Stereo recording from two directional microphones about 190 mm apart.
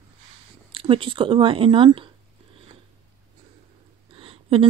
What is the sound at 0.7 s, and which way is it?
Speech, 30° right (ahead or behind).